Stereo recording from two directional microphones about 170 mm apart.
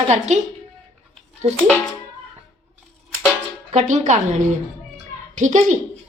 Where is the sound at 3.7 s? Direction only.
45° right (ahead or behind).